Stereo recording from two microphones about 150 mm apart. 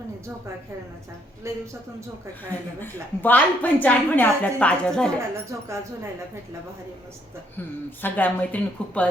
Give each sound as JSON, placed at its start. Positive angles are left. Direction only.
{"t": 1.5, "sound": "speech", "side_deg": -20}
{"t": 2.8, "sound": "a woman's voice", "side_deg": 10}
{"t": 5.5, "sound": "speech", "side_deg": -20}
{"t": 7.9, "sound": "a woman's voice", "side_deg": 10}